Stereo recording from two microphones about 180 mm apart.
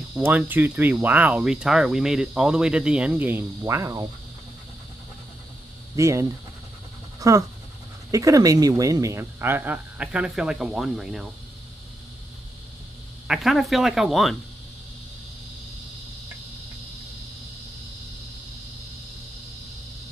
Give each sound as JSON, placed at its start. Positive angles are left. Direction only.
{"t": 0.2, "sound": "speech", "side_deg": -10}
{"t": 5.9, "sound": "speech", "side_deg": -15}
{"t": 13.3, "sound": "speech", "side_deg": 0}